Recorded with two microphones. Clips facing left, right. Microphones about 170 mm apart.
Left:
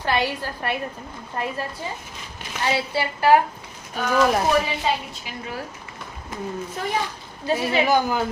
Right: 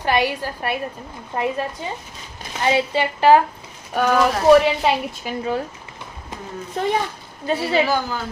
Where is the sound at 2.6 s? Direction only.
20° right (ahead or behind).